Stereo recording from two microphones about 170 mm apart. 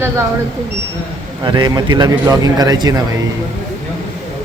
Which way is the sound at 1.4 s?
25° right (ahead or behind).